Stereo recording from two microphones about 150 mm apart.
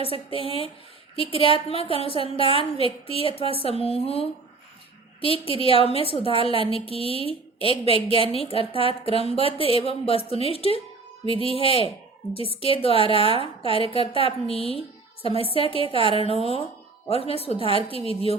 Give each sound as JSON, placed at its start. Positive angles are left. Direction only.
{"t": 0.0, "sound": "a woman's voice", "side_deg": 40}